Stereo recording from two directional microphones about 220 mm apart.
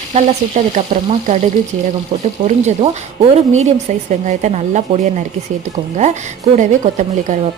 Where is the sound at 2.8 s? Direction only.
25° right (ahead or behind).